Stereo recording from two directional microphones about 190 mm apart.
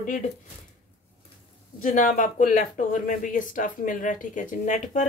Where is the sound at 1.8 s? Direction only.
45° left (ahead or behind).